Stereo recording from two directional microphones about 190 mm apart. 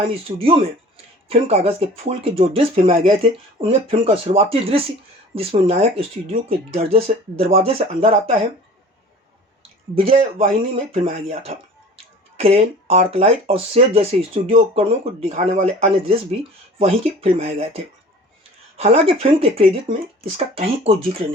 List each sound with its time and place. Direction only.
0.1 s speech: 30° right (ahead or behind)
9.9 s speech: 30° right (ahead or behind)